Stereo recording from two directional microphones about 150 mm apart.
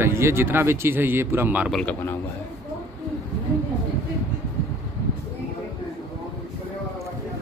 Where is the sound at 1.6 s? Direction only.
Centre (ahead or behind).